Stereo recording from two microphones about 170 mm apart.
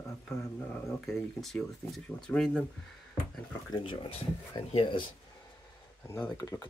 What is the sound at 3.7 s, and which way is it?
Speech, 30° left (ahead or behind).